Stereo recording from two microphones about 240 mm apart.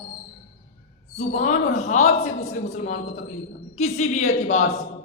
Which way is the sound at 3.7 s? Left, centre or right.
Left.